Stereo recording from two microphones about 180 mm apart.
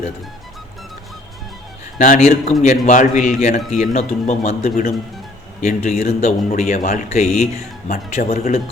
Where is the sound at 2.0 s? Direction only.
45° left (ahead or behind).